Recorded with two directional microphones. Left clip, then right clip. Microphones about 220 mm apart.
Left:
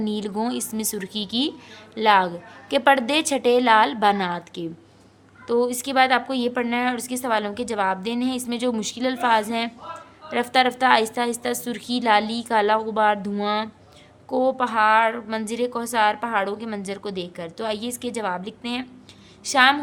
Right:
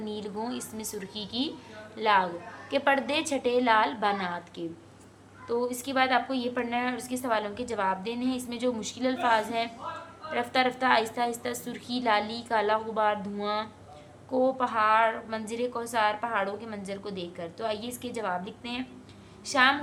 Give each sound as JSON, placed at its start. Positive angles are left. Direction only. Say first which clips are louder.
{"t": 0.0, "sound": "a woman's voice", "louder": "left 8 dB", "side_deg": 50}